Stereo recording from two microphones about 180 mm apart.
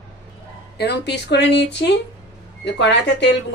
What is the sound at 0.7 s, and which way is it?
A woman's voice, 70° left (ahead or behind).